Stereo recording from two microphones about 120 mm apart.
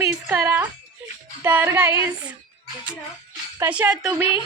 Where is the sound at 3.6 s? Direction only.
10° right (ahead or behind).